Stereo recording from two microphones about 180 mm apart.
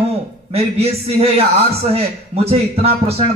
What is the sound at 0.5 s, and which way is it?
A man's voice, 35° right (ahead or behind).